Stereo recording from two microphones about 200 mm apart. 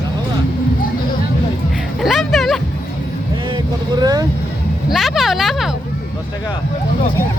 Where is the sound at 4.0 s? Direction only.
20° right (ahead or behind).